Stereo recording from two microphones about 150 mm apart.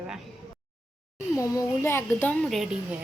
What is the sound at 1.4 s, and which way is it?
A child's voice, 20° left (ahead or behind).